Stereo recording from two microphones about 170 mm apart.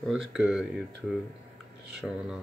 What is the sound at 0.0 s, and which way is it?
Speech, centre (ahead or behind).